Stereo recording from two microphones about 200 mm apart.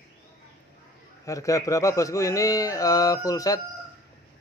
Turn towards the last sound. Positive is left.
turn(degrees=15)  # may be behind; listen again after turning